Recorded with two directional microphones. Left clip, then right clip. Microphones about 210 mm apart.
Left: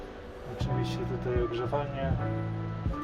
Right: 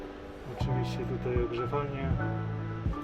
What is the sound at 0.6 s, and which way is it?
Speech, 10° right (ahead or behind).